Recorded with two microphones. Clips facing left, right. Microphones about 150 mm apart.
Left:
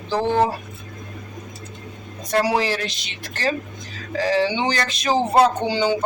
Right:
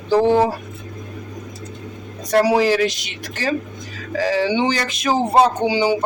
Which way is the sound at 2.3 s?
5° right (ahead or behind).